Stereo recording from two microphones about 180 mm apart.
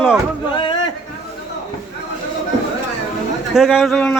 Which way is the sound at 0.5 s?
25° left (ahead or behind).